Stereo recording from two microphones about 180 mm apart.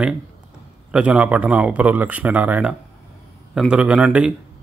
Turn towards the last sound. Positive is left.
turn(degrees=-5)  # may be behind; listen again after turning